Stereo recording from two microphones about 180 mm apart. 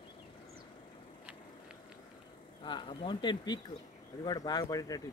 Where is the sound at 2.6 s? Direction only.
25° left (ahead or behind).